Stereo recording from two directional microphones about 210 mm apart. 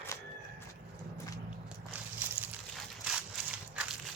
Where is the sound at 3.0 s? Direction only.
5° right (ahead or behind).